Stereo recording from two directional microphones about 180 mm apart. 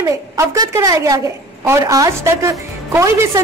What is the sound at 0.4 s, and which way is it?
A woman's voice, 20° right (ahead or behind).